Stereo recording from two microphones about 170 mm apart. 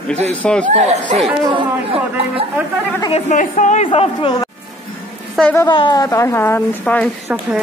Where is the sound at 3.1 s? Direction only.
50° left (ahead or behind).